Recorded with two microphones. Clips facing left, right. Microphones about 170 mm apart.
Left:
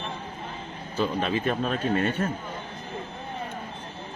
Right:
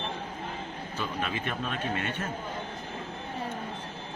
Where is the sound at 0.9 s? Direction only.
35° left (ahead or behind).